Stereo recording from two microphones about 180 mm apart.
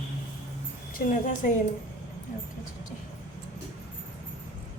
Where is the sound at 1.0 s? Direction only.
45° left (ahead or behind).